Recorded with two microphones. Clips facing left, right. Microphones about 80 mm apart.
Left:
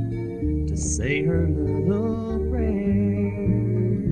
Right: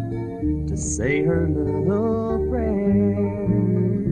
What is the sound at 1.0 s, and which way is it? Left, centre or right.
Music, right.